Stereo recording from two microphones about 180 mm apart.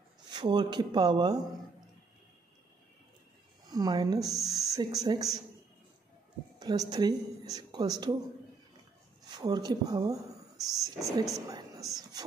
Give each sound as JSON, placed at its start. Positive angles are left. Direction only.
{"t": 0.3, "sound": "speech", "side_deg": -25}
{"t": 3.6, "sound": "speech", "side_deg": -20}
{"t": 4.4, "sound": "speech", "side_deg": 0}
{"t": 4.7, "sound": "speech", "side_deg": -20}
{"t": 6.6, "sound": "speech", "side_deg": -20}
{"t": 9.2, "sound": "speech", "side_deg": -20}